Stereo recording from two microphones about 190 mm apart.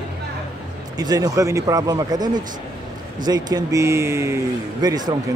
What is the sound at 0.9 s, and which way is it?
Speech, 20° right (ahead or behind).